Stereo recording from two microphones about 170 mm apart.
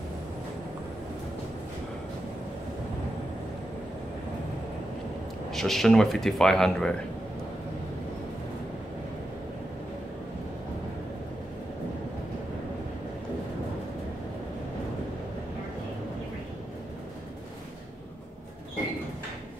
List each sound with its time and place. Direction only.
5.5 s speech: centre (ahead or behind)